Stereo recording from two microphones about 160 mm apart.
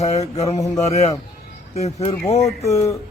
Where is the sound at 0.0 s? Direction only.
40° left (ahead or behind).